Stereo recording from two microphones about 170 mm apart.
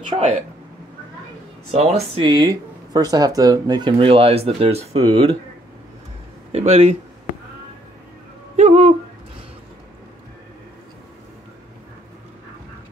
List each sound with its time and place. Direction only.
1.7 s speech: 35° right (ahead or behind)
6.5 s speech: 35° right (ahead or behind)
8.5 s a sound: 40° right (ahead or behind)